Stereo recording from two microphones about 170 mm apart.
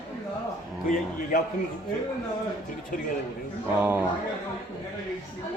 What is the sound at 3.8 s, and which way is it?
Speech, 10° right (ahead or behind).